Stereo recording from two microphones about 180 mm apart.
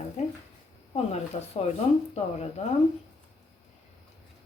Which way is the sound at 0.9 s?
35° left (ahead or behind).